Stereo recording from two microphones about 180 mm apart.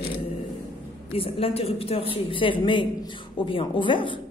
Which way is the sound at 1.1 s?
30° left (ahead or behind).